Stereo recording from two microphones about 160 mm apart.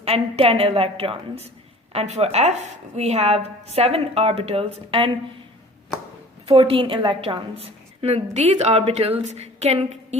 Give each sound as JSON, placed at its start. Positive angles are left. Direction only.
{"t": 0.0, "sound": "a woman's voice", "side_deg": -35}
{"t": 6.5, "sound": "a woman's voice", "side_deg": -35}